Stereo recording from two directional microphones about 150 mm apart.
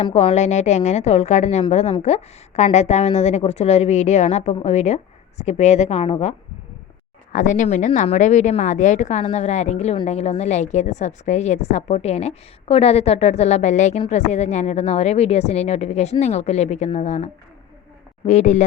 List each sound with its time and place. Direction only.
0.0 s a woman's voice: 40° left (ahead or behind)
7.3 s a woman's voice: 55° left (ahead or behind)
18.3 s a woman's voice: 50° left (ahead or behind)